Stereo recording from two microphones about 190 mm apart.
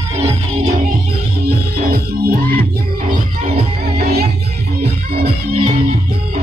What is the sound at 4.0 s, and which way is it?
Music, 50° right (ahead or behind).